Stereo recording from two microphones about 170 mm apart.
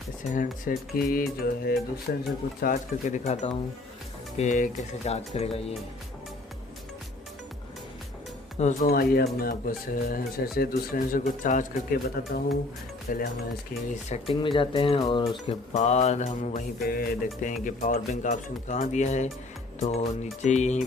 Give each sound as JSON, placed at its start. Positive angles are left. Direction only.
{"t": 0.3, "sound": "speech", "side_deg": 50}
{"t": 2.6, "sound": "speech", "side_deg": 50}
{"t": 8.5, "sound": "speech", "side_deg": 45}
{"t": 8.9, "sound": "speech", "side_deg": 65}
{"t": 12.0, "sound": "speech", "side_deg": 65}
{"t": 14.1, "sound": "speech", "side_deg": 30}
{"t": 15.7, "sound": "speech", "side_deg": 40}
{"t": 16.9, "sound": "speech", "side_deg": 65}
{"t": 17.5, "sound": "speech", "side_deg": 50}